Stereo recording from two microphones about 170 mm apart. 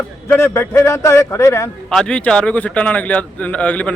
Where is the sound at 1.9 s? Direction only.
5° left (ahead or behind).